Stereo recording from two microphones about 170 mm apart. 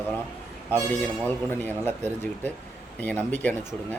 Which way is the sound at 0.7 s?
10° left (ahead or behind).